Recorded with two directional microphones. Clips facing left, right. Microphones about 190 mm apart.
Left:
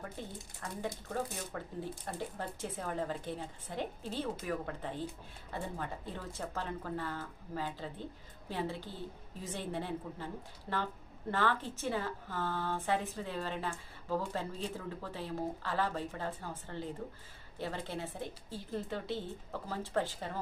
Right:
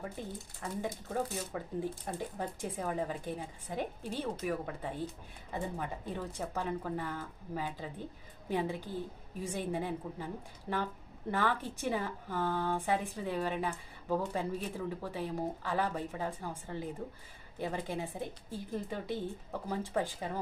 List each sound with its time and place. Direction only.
1.1 s speech: 15° right (ahead or behind)